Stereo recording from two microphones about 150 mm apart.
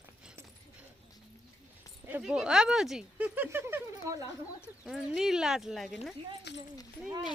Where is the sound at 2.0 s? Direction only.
10° right (ahead or behind).